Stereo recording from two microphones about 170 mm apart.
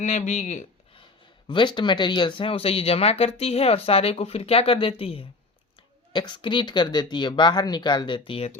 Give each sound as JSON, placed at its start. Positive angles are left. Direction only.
{"t": 0.0, "sound": "speech", "side_deg": 45}
{"t": 1.5, "sound": "speech", "side_deg": 30}